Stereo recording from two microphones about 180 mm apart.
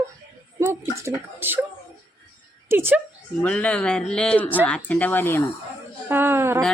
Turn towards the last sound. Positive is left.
turn(degrees=-15)  # may be behind; listen again after turning